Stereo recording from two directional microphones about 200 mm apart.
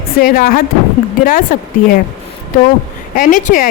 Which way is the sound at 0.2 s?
50° left (ahead or behind).